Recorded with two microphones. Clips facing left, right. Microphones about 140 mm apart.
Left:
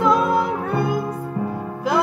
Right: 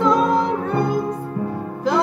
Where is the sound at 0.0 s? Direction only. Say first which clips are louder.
Right 1 dB; 10° left (ahead or behind).